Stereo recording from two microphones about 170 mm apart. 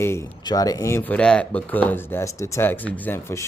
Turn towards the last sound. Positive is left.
turn(degrees=15)  # may be behind; listen again after turning